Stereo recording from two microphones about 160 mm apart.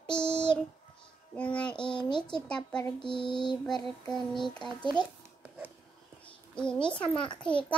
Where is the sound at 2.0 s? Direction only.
30° left (ahead or behind).